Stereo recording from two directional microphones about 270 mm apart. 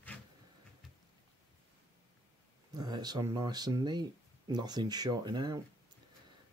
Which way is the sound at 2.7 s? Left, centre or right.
Centre.